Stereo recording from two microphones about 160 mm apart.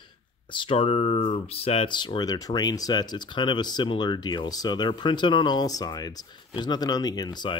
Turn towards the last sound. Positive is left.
turn(degrees=25)  # may be behind; listen again after turning